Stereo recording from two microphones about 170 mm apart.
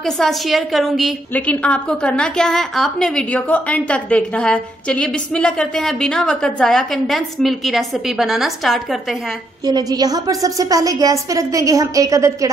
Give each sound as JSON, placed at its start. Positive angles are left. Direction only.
{"t": 0.0, "sound": "a woman's voice", "side_deg": 0}
{"t": 9.7, "sound": "a woman's voice", "side_deg": -25}